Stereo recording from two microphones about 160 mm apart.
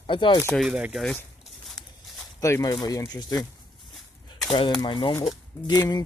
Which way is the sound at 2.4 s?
20° left (ahead or behind).